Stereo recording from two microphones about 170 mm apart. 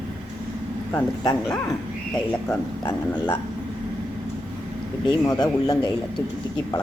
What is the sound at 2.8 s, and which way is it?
Speech, 25° left (ahead or behind).